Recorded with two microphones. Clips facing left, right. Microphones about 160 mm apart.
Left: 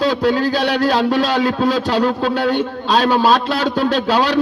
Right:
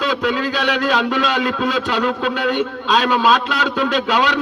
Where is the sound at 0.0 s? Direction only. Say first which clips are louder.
Left 4 dB; 35° left (ahead or behind).